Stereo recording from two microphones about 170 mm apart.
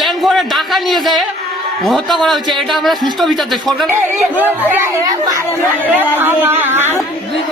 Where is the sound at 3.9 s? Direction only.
10° right (ahead or behind).